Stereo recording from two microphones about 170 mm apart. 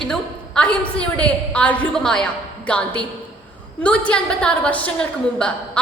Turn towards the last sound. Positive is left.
turn(degrees=5)  # may be behind; listen again after turning